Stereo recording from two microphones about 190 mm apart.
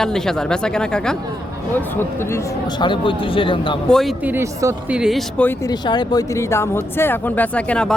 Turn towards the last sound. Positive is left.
turn(degrees=5)  # may be behind; listen again after turning